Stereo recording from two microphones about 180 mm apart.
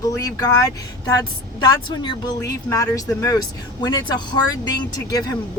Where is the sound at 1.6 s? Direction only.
25° left (ahead or behind).